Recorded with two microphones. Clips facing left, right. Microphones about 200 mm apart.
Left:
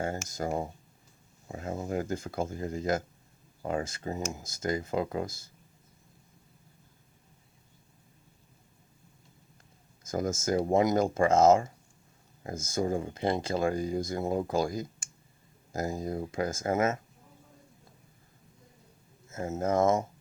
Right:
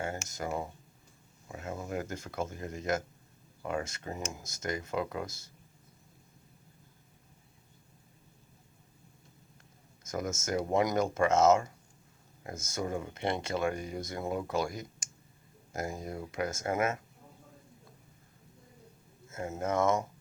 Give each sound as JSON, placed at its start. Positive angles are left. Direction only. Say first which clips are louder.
{"t": 0.0, "sound": "speech", "louder": "left 4 dB", "side_deg": 35}
{"t": 10.0, "sound": "speech", "louder": "left 4 dB", "side_deg": 30}
{"t": 19.3, "sound": "speech", "louder": "left 4 dB", "side_deg": 25}